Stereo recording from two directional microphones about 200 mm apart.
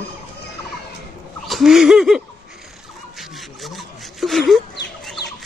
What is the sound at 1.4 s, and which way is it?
Speech, centre (ahead or behind).